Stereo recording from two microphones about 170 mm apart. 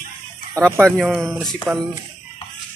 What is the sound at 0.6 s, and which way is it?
Speech, 20° right (ahead or behind).